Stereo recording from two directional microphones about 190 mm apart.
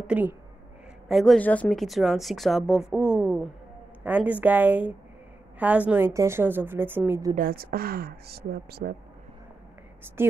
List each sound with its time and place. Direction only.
0.0 s a woman's voice: 10° right (ahead or behind)
7.3 s speech: 50° right (ahead or behind)
10.2 s a woman's voice: 10° right (ahead or behind)